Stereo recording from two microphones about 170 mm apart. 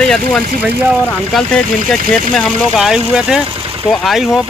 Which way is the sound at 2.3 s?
5° right (ahead or behind).